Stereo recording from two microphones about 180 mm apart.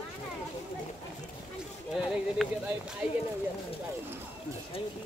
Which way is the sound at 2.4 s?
Centre (ahead or behind).